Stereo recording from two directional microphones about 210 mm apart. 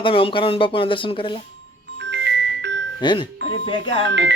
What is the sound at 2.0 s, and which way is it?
Music, 55° right (ahead or behind).